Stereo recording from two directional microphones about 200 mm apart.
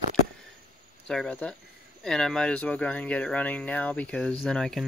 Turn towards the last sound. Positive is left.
turn(degrees=5)  # may be behind; listen again after turning